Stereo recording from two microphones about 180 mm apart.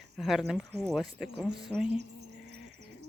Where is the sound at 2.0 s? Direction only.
70° right (ahead or behind).